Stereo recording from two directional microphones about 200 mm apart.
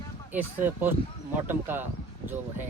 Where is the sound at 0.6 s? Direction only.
10° right (ahead or behind).